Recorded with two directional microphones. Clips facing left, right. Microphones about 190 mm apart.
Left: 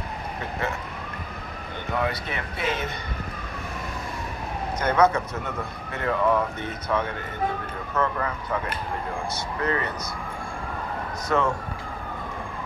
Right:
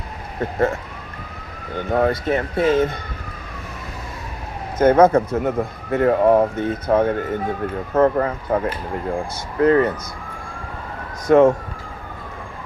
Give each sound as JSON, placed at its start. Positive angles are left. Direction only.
{"t": 0.4, "sound": "speech", "side_deg": -50}
{"t": 1.9, "sound": "speech", "side_deg": -45}
{"t": 4.7, "sound": "speech", "side_deg": -50}
{"t": 11.2, "sound": "speech", "side_deg": -50}